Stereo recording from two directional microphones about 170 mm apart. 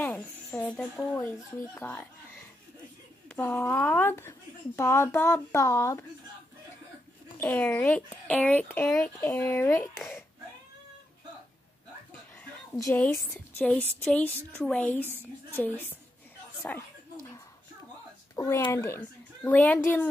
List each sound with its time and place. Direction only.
0.0 s a sound: 10° left (ahead or behind)
0.7 s speech: 5° left (ahead or behind)
3.3 s speech: 10° left (ahead or behind)
7.3 s speech: 10° left (ahead or behind)
12.7 s a woman's voice: 20° left (ahead or behind)
16.6 s speech: 10° left (ahead or behind)
18.3 s a woman's voice: 20° left (ahead or behind)